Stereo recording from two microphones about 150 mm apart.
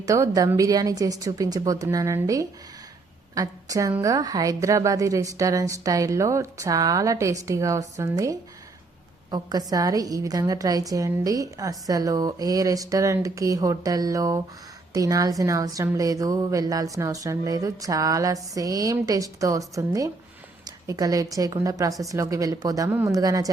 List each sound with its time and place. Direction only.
0.0 s a woman's voice: 25° right (ahead or behind)